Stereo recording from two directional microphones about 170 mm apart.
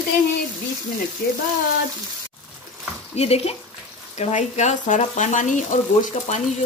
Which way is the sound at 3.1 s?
35° left (ahead or behind).